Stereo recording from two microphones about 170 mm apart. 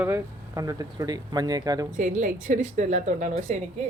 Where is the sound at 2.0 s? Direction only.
45° right (ahead or behind).